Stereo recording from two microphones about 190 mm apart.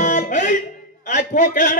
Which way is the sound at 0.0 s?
40° left (ahead or behind).